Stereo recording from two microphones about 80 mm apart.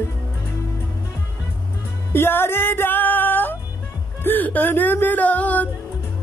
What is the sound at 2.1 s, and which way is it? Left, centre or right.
Music, left.